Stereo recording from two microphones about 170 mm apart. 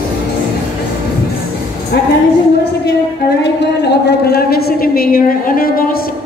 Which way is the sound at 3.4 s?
80° left.